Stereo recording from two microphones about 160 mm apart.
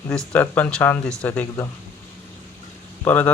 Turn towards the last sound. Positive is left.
turn(degrees=10)  # may be behind; listen again after turning